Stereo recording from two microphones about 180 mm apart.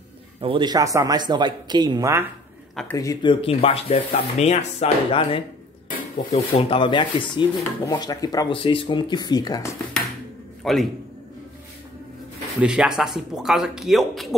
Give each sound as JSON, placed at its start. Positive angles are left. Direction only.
{"t": 0.4, "sound": "speech", "side_deg": -25}
{"t": 2.7, "sound": "speech", "side_deg": 0}
{"t": 3.0, "sound": "speech", "side_deg": 20}
{"t": 10.6, "sound": "a man's voice", "side_deg": 0}
{"t": 12.5, "sound": "speech", "side_deg": -5}